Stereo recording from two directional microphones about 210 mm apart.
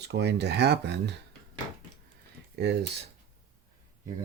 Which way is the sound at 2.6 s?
55° right (ahead or behind).